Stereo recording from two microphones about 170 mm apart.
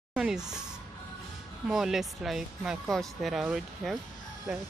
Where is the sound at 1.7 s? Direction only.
Centre (ahead or behind).